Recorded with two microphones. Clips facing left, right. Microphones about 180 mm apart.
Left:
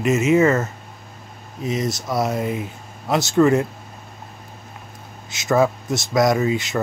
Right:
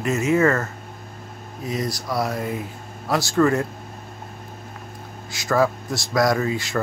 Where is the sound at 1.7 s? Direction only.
20° left (ahead or behind).